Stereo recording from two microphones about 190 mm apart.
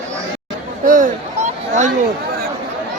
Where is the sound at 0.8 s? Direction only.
45° right (ahead or behind).